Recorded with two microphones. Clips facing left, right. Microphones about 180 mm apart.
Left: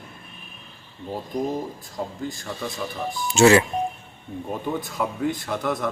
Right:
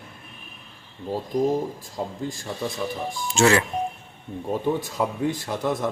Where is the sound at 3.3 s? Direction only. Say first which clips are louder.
Left 4 dB; 5° left (ahead or behind).